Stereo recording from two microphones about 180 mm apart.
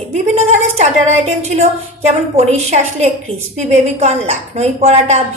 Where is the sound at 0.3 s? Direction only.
40° right (ahead or behind).